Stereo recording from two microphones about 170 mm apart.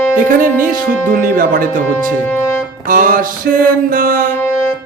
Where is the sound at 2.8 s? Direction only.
55° right (ahead or behind).